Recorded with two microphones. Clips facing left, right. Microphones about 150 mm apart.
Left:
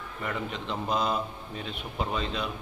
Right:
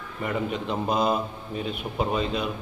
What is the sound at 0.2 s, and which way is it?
A man's voice, 15° right (ahead or behind).